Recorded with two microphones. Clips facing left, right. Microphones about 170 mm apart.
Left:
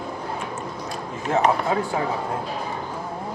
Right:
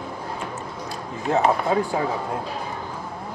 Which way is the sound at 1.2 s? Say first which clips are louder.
Right 1 dB; 20° right (ahead or behind).